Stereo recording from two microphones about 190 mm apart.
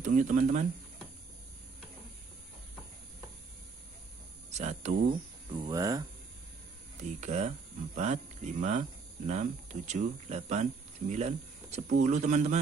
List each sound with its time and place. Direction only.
0.0 s speech: 40° right (ahead or behind)
4.5 s speech: 35° right (ahead or behind)
5.5 s speech: 20° right (ahead or behind)
7.0 s speech: 40° right (ahead or behind)